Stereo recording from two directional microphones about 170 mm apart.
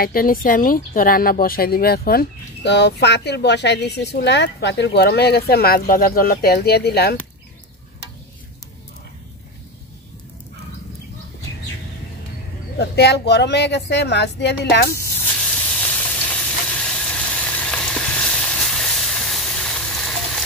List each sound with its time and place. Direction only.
0.0 s speech: 60° left (ahead or behind)
12.7 s speech: 75° left (ahead or behind)
15.4 s frying: 5° left (ahead or behind)